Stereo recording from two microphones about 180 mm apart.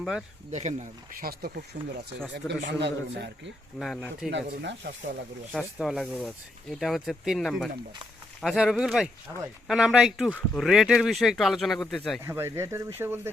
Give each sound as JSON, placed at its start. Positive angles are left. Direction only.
{"t": 0.0, "sound": "speech", "side_deg": 0}
{"t": 0.5, "sound": "speech", "side_deg": -40}
{"t": 1.2, "sound": "speech", "side_deg": -55}
{"t": 2.5, "sound": "a man's voice", "side_deg": -70}
{"t": 3.8, "sound": "speech", "side_deg": 5}
{"t": 4.3, "sound": "speech", "side_deg": -80}
{"t": 5.5, "sound": "speech", "side_deg": 0}
{"t": 12.2, "sound": "speech", "side_deg": -15}